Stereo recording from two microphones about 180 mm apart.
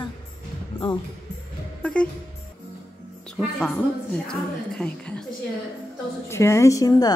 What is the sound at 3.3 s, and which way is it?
A woman's voice, 5° left (ahead or behind).